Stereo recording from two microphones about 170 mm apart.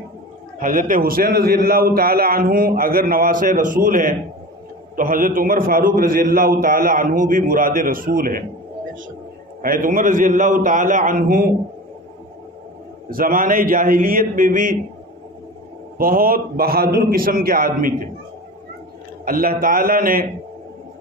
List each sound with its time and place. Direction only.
0.6 s a man's voice: 50° right (ahead or behind)
9.6 s a man's voice: 55° right (ahead or behind)
13.1 s a man's voice: 55° right (ahead or behind)
16.0 s a man's voice: 55° right (ahead or behind)
19.2 s a man's voice: 55° right (ahead or behind)